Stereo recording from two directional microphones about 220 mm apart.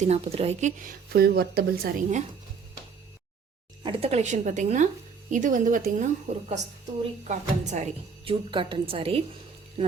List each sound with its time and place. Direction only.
0.0 s speech: 30° right (ahead or behind)
3.8 s a woman's voice: 30° right (ahead or behind)